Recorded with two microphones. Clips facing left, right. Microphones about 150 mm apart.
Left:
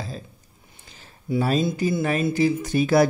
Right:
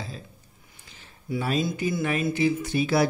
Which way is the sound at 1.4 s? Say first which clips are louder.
Left 4 dB; 40° left (ahead or behind).